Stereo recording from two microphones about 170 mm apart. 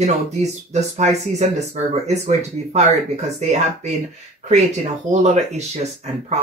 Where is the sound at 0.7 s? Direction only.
40° right (ahead or behind).